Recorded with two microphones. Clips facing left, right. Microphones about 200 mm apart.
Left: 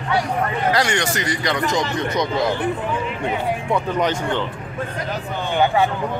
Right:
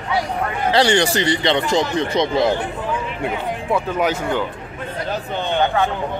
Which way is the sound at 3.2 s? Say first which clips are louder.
Even; 5° right (ahead or behind).